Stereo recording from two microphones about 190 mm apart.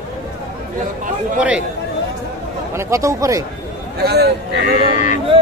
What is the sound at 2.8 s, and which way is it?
Speech, 15° right (ahead or behind).